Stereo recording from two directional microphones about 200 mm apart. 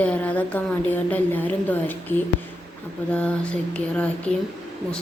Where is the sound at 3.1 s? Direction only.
5° left (ahead or behind).